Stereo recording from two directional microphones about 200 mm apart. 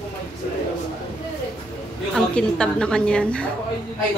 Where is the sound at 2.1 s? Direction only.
5° left (ahead or behind).